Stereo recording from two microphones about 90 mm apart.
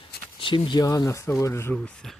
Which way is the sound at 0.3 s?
70° left (ahead or behind).